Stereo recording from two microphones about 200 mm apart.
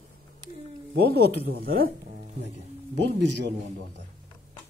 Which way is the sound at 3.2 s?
60° right (ahead or behind).